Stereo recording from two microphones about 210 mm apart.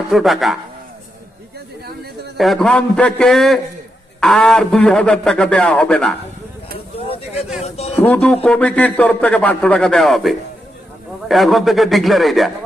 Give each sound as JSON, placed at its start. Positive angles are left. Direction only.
{"t": 0.1, "sound": "speech", "side_deg": 0}
{"t": 2.4, "sound": "speech", "side_deg": 0}
{"t": 7.6, "sound": "a sound", "side_deg": 30}
{"t": 7.9, "sound": "speech", "side_deg": 10}